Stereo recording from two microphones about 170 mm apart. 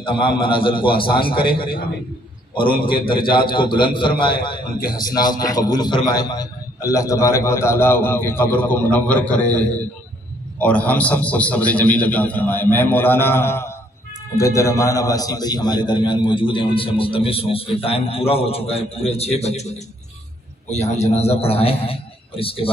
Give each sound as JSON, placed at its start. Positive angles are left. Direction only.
{"t": 0.0, "sound": "a man's voice", "side_deg": 30}
{"t": 20.7, "sound": "a man's voice", "side_deg": 40}